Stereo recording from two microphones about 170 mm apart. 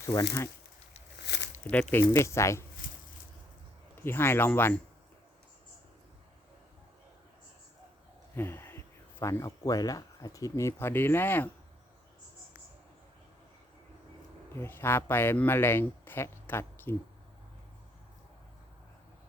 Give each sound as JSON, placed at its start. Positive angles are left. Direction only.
{"t": 0.0, "sound": "speech", "side_deg": 20}
{"t": 1.2, "sound": "a sound", "side_deg": 90}
{"t": 1.7, "sound": "speech", "side_deg": 10}
{"t": 3.9, "sound": "speech", "side_deg": 15}
{"t": 8.4, "sound": "speech", "side_deg": 10}
{"t": 14.5, "sound": "speech", "side_deg": 15}